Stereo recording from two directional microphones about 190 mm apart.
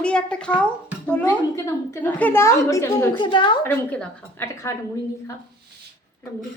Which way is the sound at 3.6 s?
10° left (ahead or behind).